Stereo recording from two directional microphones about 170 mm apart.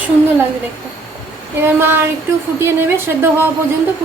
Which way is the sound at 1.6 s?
15° right (ahead or behind).